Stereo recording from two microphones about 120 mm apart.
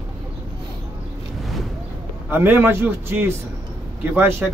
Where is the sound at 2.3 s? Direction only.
20° right (ahead or behind).